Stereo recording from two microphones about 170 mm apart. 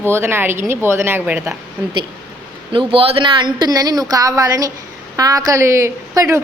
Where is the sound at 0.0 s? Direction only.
15° right (ahead or behind).